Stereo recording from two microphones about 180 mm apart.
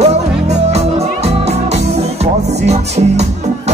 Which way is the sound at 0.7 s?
35° right (ahead or behind).